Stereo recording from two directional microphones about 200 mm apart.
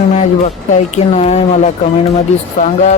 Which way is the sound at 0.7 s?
35° left (ahead or behind).